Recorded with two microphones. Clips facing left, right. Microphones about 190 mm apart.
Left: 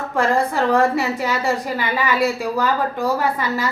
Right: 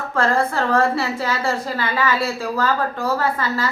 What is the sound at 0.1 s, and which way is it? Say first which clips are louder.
A woman's voice: left 1 dB; 15° left (ahead or behind).